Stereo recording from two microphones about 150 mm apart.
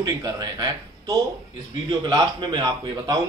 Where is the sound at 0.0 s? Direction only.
25° right (ahead or behind).